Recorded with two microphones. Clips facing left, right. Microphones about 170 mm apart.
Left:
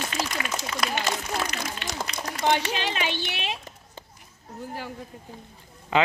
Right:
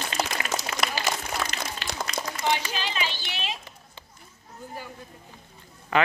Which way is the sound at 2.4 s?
65° left (ahead or behind).